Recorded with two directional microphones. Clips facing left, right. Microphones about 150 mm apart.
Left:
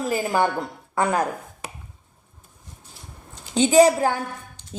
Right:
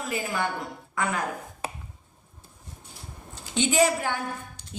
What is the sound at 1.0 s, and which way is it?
Speech, 35° left (ahead or behind).